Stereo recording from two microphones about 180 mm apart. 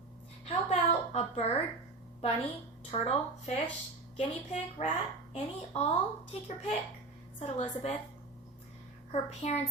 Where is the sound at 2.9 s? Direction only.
35° left (ahead or behind).